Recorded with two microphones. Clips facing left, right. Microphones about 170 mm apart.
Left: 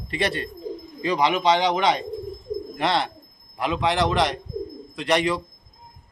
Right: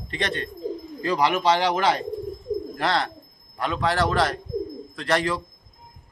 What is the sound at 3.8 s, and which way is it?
A man's voice, 20° left (ahead or behind).